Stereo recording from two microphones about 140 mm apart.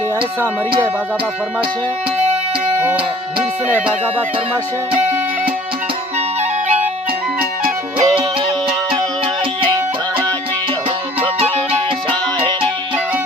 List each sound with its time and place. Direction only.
6.1 s music: 55° right (ahead or behind)
8.1 s music: 40° right (ahead or behind)
11.7 s music: 40° right (ahead or behind)